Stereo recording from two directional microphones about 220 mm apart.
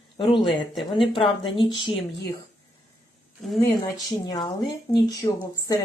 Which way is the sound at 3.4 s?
Centre (ahead or behind).